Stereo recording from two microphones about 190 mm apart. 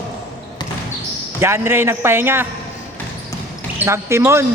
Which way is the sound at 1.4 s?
15° right (ahead or behind).